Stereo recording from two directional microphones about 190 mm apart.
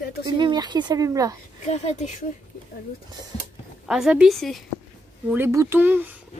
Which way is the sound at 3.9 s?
5° right (ahead or behind).